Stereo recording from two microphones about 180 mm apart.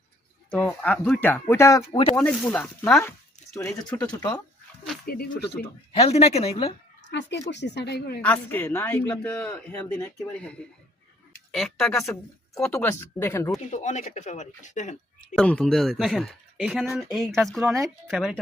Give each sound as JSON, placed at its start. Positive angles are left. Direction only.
{"t": 0.5, "sound": "speech", "side_deg": 5}
{"t": 1.9, "sound": "speech", "side_deg": 30}
{"t": 2.1, "sound": "speech", "side_deg": 5}
{"t": 5.0, "sound": "speech", "side_deg": 60}
{"t": 5.9, "sound": "speech", "side_deg": 35}
{"t": 7.1, "sound": "speech", "side_deg": 80}
{"t": 8.2, "sound": "speech", "side_deg": 10}
{"t": 11.5, "sound": "speech", "side_deg": 0}
{"t": 11.9, "sound": "speech", "side_deg": 15}
{"t": 12.5, "sound": "speech", "side_deg": 5}
{"t": 13.7, "sound": "speech", "side_deg": 40}
{"t": 15.4, "sound": "speech", "side_deg": 5}